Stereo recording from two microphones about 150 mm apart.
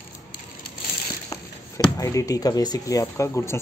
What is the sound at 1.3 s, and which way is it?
Speech, 20° left (ahead or behind).